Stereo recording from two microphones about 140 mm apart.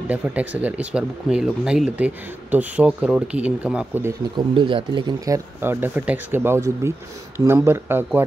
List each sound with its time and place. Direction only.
0.1 s speech: 10° right (ahead or behind)
4.4 s speech: 35° right (ahead or behind); by 8.2 s 15° right (ahead or behind)